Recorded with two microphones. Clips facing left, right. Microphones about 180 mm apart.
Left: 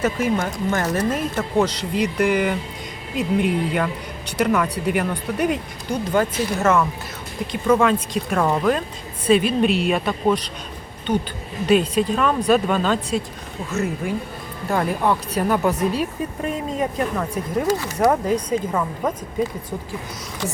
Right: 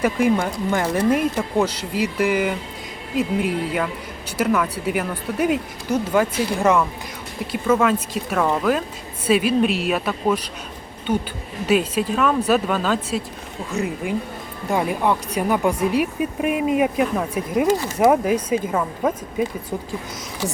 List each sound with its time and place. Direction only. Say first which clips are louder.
0.0 s speech: right 2 dB; 10° right (ahead or behind)
8.4 s speech: even; 10° left (ahead or behind)
9.2 s speech: left 1 dB; 5° right (ahead or behind)
13.7 s speech: even; 15° right (ahead or behind)